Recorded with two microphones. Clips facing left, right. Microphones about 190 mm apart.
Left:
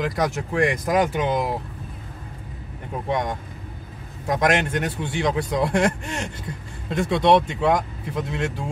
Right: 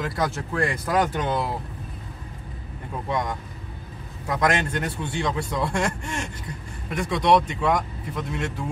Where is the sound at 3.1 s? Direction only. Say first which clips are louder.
Left 2 dB; 20° left (ahead or behind).